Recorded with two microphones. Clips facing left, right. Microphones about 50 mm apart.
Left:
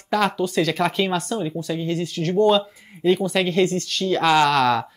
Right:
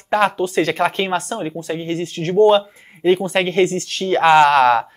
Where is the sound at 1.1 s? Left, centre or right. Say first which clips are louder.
Right 2 dB; right.